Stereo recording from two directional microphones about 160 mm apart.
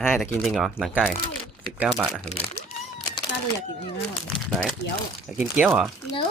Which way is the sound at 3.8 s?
35° left (ahead or behind).